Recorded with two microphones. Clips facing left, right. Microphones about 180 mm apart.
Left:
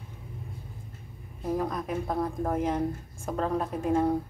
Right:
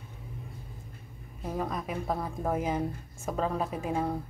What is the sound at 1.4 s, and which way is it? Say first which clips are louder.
A woman's voice: left 4 dB; centre (ahead or behind).